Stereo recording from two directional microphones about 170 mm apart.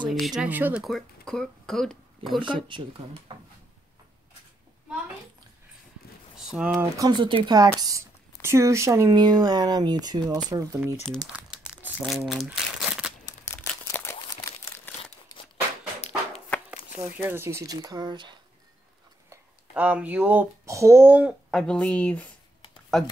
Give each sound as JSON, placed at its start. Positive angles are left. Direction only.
{"t": 0.1, "sound": "speech", "side_deg": 0}
{"t": 0.8, "sound": "speech", "side_deg": 0}
{"t": 2.4, "sound": "speech", "side_deg": -30}
{"t": 6.3, "sound": "a sound", "side_deg": -5}
{"t": 6.7, "sound": "speech", "side_deg": -20}
{"t": 11.2, "sound": "crumpling", "side_deg": -5}
{"t": 13.2, "sound": "crumpling", "side_deg": 15}
{"t": 16.7, "sound": "speech", "side_deg": -10}
{"t": 19.7, "sound": "speech", "side_deg": -10}